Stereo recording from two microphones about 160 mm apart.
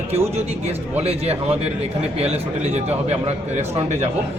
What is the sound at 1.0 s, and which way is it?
A man's voice, 40° right (ahead or behind).